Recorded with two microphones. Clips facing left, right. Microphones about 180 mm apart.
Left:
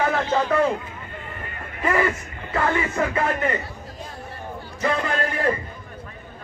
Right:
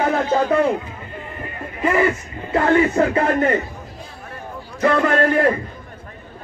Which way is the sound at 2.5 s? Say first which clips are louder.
Right 7 dB; 35° right (ahead or behind).